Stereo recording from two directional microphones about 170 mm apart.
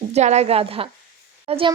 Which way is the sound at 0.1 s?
40° right (ahead or behind).